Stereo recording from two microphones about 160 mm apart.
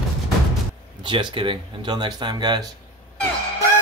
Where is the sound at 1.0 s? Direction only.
30° right (ahead or behind).